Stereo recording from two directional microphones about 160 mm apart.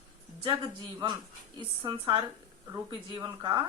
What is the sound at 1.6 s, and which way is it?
Speech, 35° right (ahead or behind).